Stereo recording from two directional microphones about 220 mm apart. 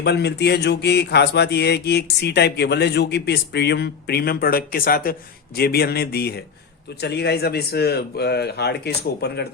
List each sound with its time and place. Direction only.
0.0 s speech: 50° left (ahead or behind)